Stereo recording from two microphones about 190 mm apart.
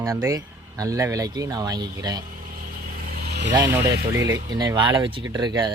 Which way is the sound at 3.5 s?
15° right (ahead or behind).